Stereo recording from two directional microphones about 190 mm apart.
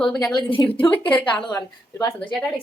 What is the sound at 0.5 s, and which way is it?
Speech, 25° left (ahead or behind).